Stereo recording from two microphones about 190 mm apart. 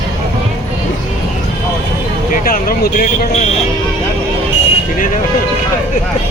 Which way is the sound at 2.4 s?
50° left (ahead or behind).